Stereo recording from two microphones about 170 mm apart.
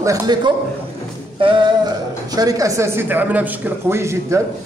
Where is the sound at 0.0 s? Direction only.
20° right (ahead or behind).